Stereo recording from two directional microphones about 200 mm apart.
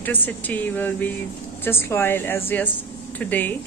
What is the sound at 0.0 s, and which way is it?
A woman's voice, 10° left (ahead or behind).